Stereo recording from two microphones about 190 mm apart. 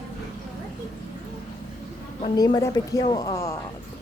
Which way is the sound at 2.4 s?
20° left (ahead or behind).